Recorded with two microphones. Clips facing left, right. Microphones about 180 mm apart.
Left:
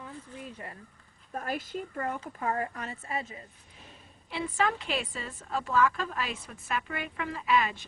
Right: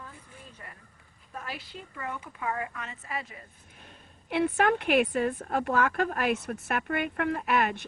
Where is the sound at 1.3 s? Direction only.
45° left (ahead or behind); by 3.4 s 25° left (ahead or behind).